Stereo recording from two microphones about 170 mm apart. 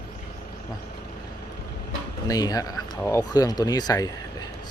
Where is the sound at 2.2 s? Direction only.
20° left (ahead or behind).